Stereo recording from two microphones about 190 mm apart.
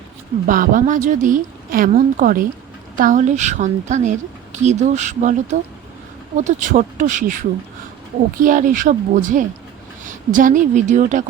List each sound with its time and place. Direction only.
0.4 s a woman's voice: 45° right (ahead or behind)
8.4 s a woman's voice: 45° right (ahead or behind)